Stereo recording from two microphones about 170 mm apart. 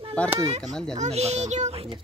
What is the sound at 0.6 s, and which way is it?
Fowl, 5° left (ahead or behind).